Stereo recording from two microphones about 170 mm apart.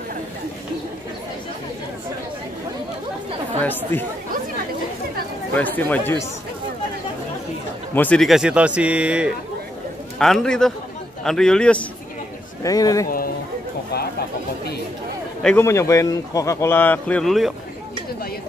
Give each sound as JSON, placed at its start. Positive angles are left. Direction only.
{"t": 5.5, "sound": "a man's voice", "side_deg": 10}
{"t": 7.9, "sound": "a man's voice", "side_deg": 10}
{"t": 12.6, "sound": "speech", "side_deg": 20}
{"t": 15.4, "sound": "a man's voice", "side_deg": 15}